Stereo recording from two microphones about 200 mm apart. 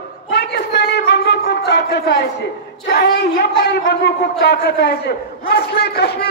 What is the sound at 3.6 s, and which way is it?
A man's voice, 55° left (ahead or behind).